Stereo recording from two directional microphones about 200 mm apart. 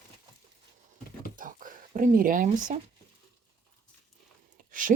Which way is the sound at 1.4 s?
40° right (ahead or behind).